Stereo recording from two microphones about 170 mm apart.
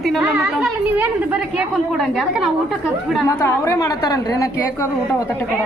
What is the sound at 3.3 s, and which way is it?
A woman's voice, 15° left (ahead or behind).